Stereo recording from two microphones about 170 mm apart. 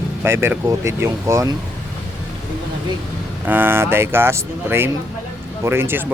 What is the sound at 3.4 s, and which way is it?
Speech, 10° right (ahead or behind).